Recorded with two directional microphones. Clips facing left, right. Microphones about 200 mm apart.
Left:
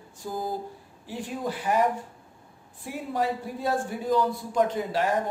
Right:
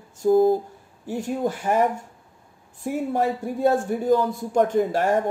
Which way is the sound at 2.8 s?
45° right (ahead or behind).